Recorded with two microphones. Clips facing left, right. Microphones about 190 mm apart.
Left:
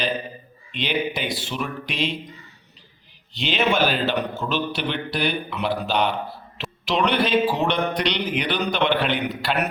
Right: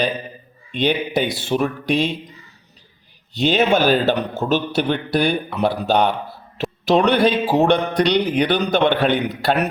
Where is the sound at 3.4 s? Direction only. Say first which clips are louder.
Right 5 dB; 40° right (ahead or behind).